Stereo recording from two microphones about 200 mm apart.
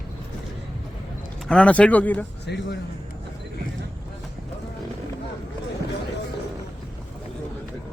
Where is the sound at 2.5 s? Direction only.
55° left (ahead or behind).